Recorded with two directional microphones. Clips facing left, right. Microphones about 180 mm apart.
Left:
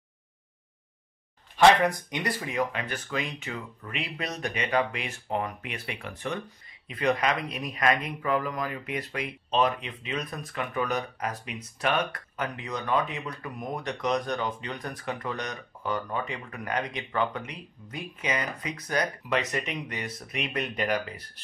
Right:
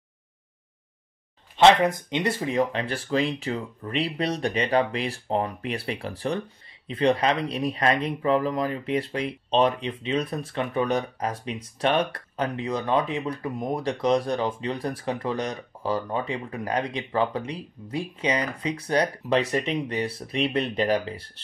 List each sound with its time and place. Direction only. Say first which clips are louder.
1.6 s speech: right 2 dB; 20° right (ahead or behind)